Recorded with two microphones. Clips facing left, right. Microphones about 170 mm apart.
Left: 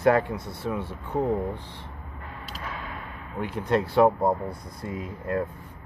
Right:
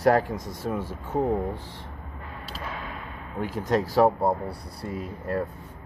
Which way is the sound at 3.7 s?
40° right (ahead or behind).